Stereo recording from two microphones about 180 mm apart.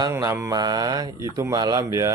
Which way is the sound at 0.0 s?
20° right (ahead or behind).